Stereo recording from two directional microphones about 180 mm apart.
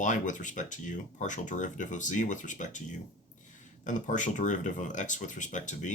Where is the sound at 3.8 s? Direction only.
45° left (ahead or behind).